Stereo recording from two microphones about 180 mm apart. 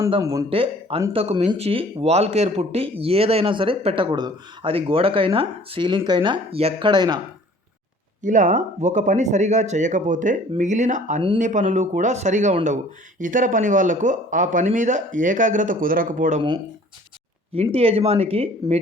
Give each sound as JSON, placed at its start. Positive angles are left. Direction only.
{"t": 0.2, "sound": "speech", "side_deg": -20}
{"t": 0.5, "sound": "speech", "side_deg": -30}
{"t": 8.2, "sound": "speech", "side_deg": -45}
{"t": 17.5, "sound": "speech", "side_deg": -30}